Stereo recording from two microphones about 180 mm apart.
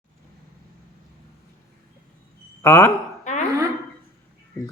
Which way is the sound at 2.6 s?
15° left (ahead or behind).